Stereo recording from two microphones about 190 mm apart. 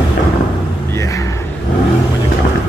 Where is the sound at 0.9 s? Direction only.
15° left (ahead or behind).